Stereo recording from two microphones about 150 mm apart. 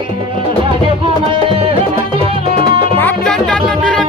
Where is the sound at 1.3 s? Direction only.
40° right (ahead or behind).